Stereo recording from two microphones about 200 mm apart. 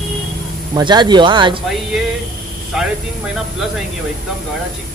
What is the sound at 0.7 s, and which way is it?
Speech, 20° right (ahead or behind).